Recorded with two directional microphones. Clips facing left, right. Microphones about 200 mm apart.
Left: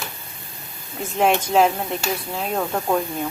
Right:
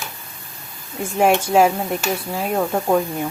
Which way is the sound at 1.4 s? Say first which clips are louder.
Right 2 dB; 10° right (ahead or behind).